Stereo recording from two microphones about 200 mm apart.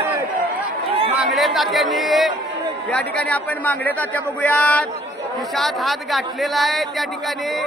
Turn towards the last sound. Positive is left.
turn(degrees=0)  # may be behind; listen again after turning